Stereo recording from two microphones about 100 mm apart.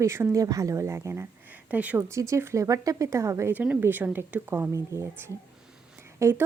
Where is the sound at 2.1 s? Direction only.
30° right (ahead or behind).